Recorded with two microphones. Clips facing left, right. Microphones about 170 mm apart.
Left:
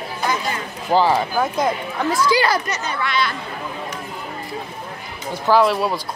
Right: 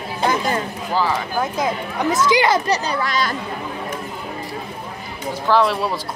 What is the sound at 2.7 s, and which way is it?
Speech, 35° right (ahead or behind).